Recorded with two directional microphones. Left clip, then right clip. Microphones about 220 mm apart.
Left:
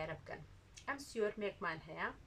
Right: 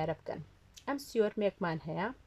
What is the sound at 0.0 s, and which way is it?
Speech, 45° right (ahead or behind).